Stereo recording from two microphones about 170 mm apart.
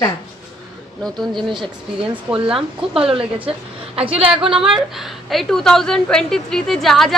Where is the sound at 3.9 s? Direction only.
35° right (ahead or behind).